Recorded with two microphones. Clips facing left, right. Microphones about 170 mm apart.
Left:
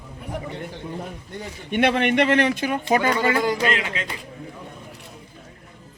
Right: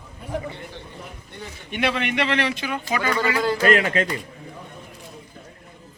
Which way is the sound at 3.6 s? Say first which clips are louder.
Right 5 dB; 45° right (ahead or behind).